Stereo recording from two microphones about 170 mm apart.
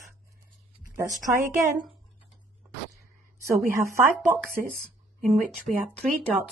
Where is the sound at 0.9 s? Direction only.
15° right (ahead or behind).